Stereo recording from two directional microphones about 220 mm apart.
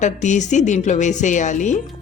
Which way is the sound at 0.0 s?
35° left (ahead or behind).